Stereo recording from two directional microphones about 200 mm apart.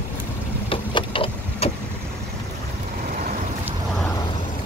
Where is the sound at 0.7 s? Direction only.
25° left (ahead or behind).